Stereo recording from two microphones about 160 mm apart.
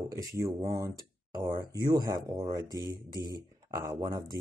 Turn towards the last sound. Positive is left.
turn(degrees=-25)  # may be behind; listen again after turning